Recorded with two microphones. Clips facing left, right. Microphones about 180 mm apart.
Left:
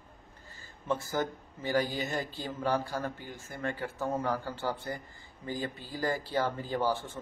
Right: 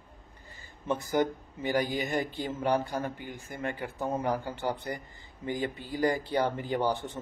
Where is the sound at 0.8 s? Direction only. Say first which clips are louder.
Right 4 dB; 20° right (ahead or behind).